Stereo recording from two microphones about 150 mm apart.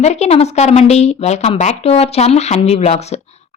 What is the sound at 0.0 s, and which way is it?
Speech, 45° left (ahead or behind).